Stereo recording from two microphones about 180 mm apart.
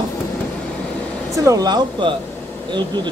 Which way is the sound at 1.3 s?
20° right (ahead or behind).